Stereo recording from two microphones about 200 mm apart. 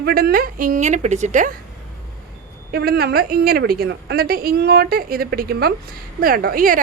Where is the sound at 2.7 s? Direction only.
50° right (ahead or behind).